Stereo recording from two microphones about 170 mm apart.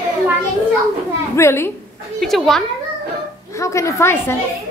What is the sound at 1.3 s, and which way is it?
Speech, 15° left (ahead or behind).